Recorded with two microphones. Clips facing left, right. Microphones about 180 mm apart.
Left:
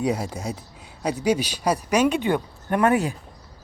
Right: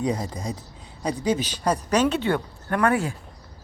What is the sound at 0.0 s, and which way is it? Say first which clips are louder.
Speech: left 1 dB; 10° left (ahead or behind).